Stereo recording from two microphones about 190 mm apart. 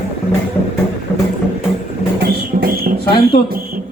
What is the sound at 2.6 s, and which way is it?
Music, 50° right (ahead or behind).